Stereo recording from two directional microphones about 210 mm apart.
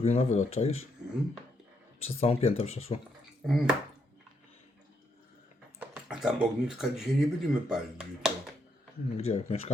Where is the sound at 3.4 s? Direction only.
Centre (ahead or behind).